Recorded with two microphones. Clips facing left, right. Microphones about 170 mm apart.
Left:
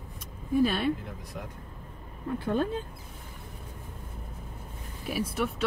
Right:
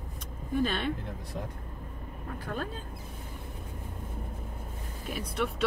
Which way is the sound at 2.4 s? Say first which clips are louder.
Left 8 dB; 25° left (ahead or behind).